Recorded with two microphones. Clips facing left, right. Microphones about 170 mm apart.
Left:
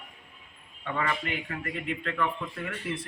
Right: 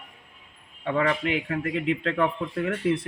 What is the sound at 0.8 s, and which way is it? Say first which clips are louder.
Speech: right 7 dB; 90° right.